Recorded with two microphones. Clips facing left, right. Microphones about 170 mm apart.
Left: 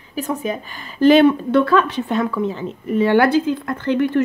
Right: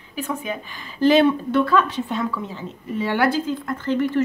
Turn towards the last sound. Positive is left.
turn(degrees=60)  # may be behind; listen again after turning